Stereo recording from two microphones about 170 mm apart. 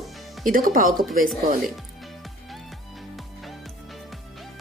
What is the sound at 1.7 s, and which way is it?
Music, centre (ahead or behind).